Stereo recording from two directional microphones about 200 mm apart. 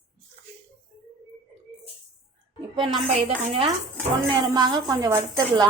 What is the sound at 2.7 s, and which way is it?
A woman's voice, 30° right (ahead or behind).